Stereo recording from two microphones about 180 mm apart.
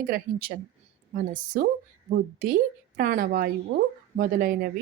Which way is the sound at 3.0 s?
50° right (ahead or behind).